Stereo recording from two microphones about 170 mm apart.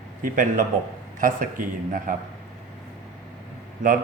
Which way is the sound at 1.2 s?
50° right (ahead or behind).